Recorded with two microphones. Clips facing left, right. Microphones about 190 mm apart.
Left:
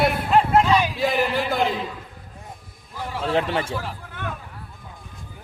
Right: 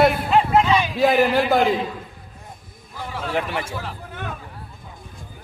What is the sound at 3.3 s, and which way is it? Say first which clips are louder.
Speech: left 3 dB; 30° left (ahead or behind).